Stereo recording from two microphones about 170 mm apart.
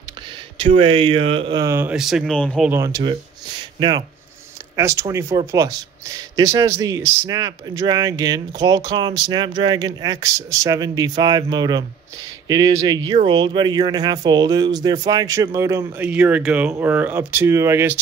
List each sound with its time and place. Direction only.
0.6 s speech: 35° right (ahead or behind); by 2.6 s 5° left (ahead or behind)
2.6 s speech: 15° right (ahead or behind)
4.7 s speech: 15° right (ahead or behind)